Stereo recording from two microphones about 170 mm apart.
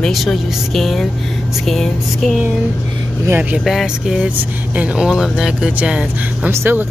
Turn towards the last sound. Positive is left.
turn(degrees=-15)  # may be behind; listen again after turning